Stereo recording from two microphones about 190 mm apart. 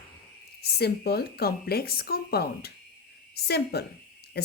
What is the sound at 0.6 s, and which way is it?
A woman's voice, 55° left (ahead or behind).